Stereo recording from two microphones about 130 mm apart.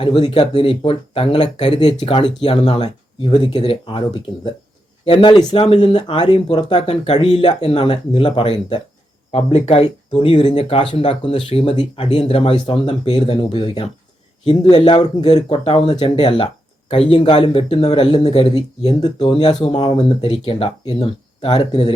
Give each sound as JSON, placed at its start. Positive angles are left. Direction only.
{"t": 0.0, "sound": "speech", "side_deg": 40}
{"t": 1.9, "sound": "speech", "side_deg": 40}
{"t": 5.5, "sound": "speech", "side_deg": 50}
{"t": 5.9, "sound": "speech", "side_deg": 35}
{"t": 6.8, "sound": "speech", "side_deg": 50}
{"t": 10.2, "sound": "speech", "side_deg": 40}
{"t": 14.4, "sound": "speech", "side_deg": 35}
{"t": 15.3, "sound": "speech", "side_deg": 55}
{"t": 18.9, "sound": "speech", "side_deg": 30}